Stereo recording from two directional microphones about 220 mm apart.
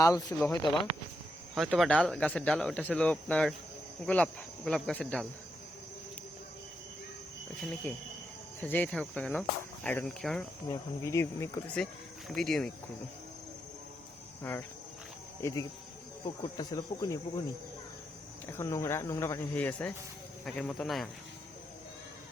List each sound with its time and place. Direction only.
0.0 s speech: 15° left (ahead or behind)
0.3 s speech: 5° left (ahead or behind)
7.6 s speech: centre (ahead or behind)
10.7 s speech: 15° left (ahead or behind)
15.4 s speech: 10° left (ahead or behind)
18.5 s speech: 15° left (ahead or behind)